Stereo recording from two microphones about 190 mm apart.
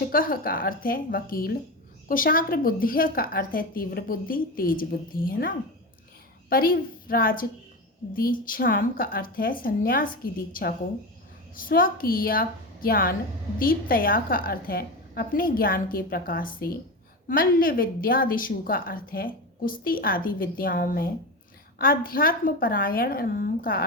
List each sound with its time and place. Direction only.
0.1 s a woman's voice: 50° left (ahead or behind)